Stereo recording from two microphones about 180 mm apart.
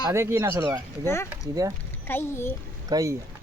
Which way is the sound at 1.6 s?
20° right (ahead or behind).